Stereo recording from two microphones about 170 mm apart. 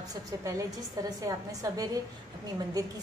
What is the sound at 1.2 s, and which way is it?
Speech, 20° right (ahead or behind).